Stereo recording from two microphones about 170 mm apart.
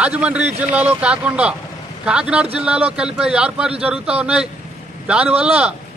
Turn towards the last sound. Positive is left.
turn(degrees=-5)  # may be behind; listen again after turning